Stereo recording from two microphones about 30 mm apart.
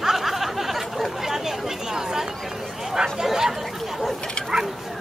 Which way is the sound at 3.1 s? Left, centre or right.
Centre.